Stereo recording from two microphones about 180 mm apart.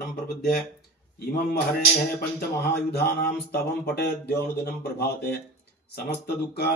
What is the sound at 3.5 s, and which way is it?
A man's voice, 60° left (ahead or behind).